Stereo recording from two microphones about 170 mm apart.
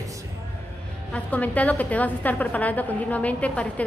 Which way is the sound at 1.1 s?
10° left (ahead or behind).